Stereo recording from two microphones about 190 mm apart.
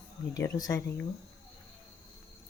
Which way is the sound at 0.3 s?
15° left (ahead or behind).